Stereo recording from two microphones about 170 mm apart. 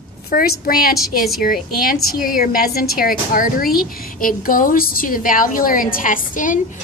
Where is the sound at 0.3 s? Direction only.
60° left (ahead or behind).